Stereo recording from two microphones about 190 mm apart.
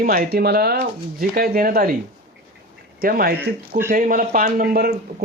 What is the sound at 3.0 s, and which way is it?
Speech, 50° right (ahead or behind).